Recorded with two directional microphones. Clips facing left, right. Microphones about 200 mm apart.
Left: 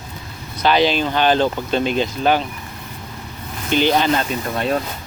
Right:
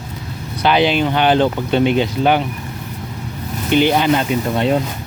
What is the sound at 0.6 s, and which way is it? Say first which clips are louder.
Speech: right 2 dB; 15° right (ahead or behind).